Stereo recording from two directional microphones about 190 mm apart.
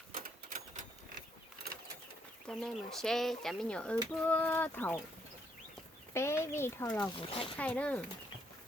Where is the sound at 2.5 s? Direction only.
Centre (ahead or behind).